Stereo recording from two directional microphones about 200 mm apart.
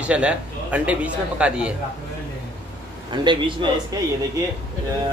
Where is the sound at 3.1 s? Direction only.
25° right (ahead or behind).